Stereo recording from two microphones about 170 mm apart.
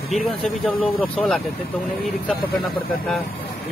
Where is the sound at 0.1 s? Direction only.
Centre (ahead or behind).